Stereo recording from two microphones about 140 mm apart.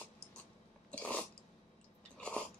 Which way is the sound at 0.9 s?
10° left (ahead or behind).